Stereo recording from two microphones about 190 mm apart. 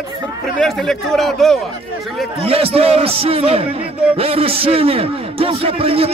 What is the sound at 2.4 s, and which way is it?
A man's voice, 30° right (ahead or behind).